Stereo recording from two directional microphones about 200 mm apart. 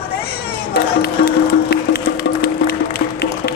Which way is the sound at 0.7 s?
50° left (ahead or behind).